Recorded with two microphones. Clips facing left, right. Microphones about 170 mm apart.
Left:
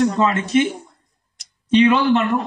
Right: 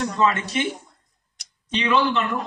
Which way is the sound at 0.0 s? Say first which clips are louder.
Left 4 dB; 50° left (ahead or behind).